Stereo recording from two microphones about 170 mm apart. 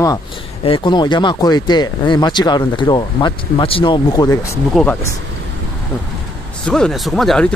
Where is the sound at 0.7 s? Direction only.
30° left (ahead or behind).